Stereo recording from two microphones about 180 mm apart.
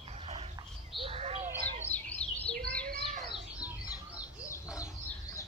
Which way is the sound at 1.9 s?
10° left (ahead or behind).